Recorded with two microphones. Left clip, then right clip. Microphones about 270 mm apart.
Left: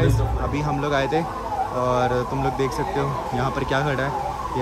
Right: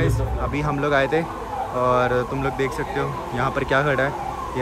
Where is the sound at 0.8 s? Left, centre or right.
Centre.